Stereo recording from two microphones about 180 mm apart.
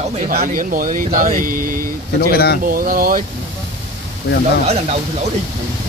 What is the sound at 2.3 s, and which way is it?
Speech, 60° left (ahead or behind).